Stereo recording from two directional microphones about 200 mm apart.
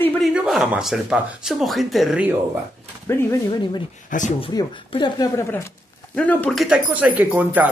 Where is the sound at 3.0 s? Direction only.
15° left (ahead or behind).